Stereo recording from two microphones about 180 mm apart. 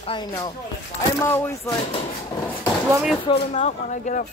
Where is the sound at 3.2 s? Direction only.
35° left (ahead or behind).